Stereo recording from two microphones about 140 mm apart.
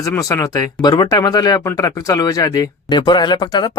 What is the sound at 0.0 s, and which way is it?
Speech, 25° left (ahead or behind).